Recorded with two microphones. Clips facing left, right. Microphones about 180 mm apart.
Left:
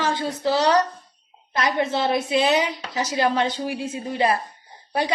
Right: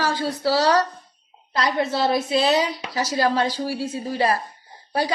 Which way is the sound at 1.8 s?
20° left (ahead or behind).